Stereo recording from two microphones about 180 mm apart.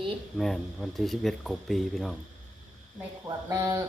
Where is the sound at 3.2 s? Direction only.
20° right (ahead or behind).